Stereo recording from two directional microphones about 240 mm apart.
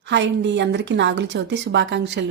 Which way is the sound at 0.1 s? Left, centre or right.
Right.